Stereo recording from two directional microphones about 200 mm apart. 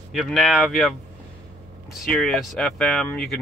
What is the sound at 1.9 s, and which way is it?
Speech, centre (ahead or behind).